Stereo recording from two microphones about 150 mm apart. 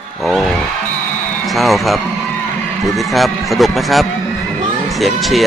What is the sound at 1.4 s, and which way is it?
Music, centre (ahead or behind).